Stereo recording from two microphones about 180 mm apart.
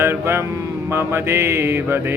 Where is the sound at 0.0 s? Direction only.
15° right (ahead or behind).